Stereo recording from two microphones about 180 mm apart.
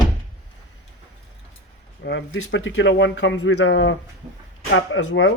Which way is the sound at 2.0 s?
85° left.